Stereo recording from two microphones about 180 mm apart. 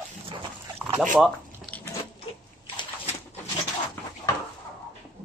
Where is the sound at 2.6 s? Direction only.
30° left (ahead or behind).